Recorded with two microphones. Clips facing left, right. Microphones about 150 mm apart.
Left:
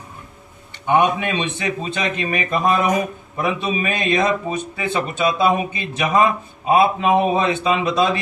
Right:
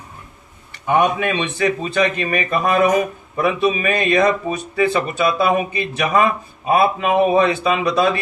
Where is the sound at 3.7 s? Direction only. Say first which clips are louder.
Right 3 dB; 25° left (ahead or behind).